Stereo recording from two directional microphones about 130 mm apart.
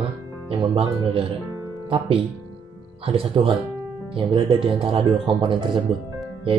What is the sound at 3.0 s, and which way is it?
Speech, 45° right (ahead or behind).